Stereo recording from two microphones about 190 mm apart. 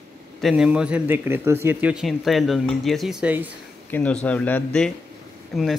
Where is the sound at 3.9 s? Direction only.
5° left (ahead or behind).